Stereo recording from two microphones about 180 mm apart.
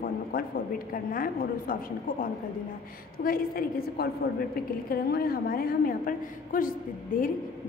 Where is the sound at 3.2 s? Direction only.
55° left (ahead or behind).